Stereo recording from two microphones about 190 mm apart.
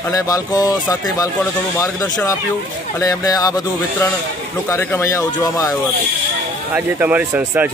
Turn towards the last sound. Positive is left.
turn(degrees=-10)  # may be behind; listen again after turning